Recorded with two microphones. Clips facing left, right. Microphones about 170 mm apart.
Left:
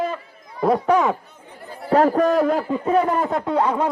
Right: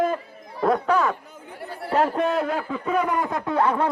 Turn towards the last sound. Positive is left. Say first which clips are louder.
# left 2 dB
turn(degrees=15)  # may be behind; listen again after turning